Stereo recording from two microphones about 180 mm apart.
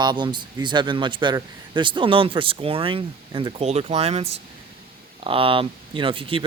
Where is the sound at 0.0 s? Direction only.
25° right (ahead or behind).